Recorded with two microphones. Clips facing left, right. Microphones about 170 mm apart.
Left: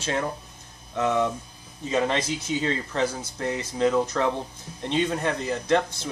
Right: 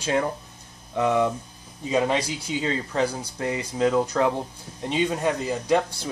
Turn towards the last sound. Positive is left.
turn(degrees=-10)  # may be behind; listen again after turning